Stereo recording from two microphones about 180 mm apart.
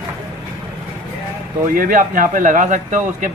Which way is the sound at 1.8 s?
50° right (ahead or behind).